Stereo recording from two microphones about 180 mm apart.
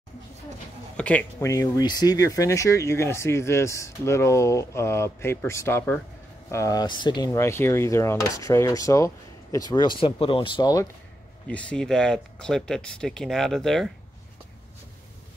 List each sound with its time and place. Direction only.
0.9 s speech: 5° left (ahead or behind)
1.4 s speech: 20° left (ahead or behind)
11.4 s speech: 5° left (ahead or behind)